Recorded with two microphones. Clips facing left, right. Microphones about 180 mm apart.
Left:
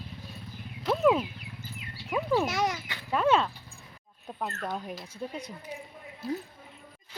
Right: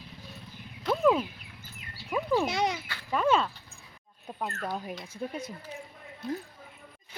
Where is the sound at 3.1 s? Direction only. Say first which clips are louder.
Left 1 dB; centre (ahead or behind).